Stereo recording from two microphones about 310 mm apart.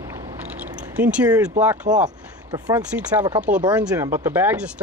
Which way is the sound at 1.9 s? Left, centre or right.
Centre.